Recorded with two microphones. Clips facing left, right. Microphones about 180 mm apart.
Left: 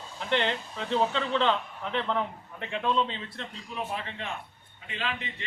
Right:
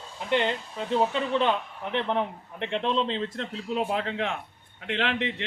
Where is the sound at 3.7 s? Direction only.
70° right (ahead or behind).